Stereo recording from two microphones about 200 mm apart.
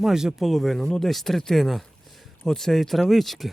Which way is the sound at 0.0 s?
Centre (ahead or behind).